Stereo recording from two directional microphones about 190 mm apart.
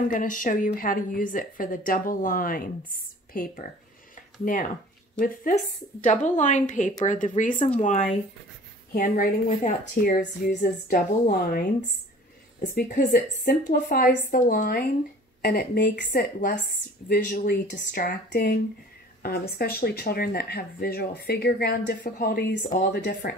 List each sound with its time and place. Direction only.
0.1 s speech: 45° left (ahead or behind)
4.1 s a sound: 45° left (ahead or behind)
5.2 s speech: 45° left (ahead or behind)
12.7 s speech: 45° left (ahead or behind); by 23.3 s 60° left (ahead or behind)